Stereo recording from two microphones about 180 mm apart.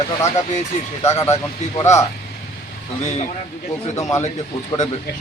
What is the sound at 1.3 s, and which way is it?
Speech, 15° left (ahead or behind).